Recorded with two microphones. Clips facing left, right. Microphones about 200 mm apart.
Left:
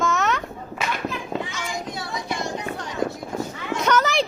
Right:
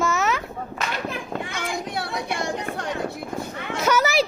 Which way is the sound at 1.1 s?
55° right (ahead or behind).